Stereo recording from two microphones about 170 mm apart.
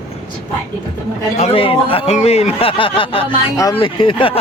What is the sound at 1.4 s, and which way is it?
Speech, 35° left (ahead or behind).